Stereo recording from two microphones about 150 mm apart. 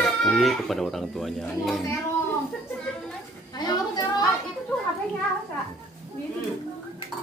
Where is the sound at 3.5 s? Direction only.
25° left (ahead or behind).